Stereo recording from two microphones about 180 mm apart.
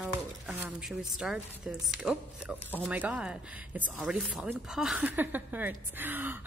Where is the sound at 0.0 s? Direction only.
10° right (ahead or behind).